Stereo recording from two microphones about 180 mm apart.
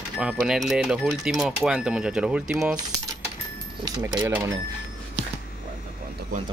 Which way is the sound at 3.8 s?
20° right (ahead or behind).